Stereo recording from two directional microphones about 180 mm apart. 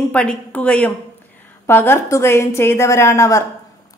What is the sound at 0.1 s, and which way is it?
A woman's voice, 5° left (ahead or behind).